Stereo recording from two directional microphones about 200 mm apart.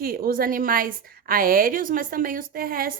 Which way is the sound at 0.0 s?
50° right (ahead or behind).